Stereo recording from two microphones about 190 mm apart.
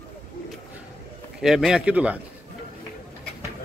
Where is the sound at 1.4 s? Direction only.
Centre (ahead or behind).